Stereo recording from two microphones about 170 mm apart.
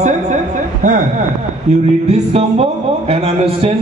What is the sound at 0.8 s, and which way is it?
A man's voice, 50° right (ahead or behind).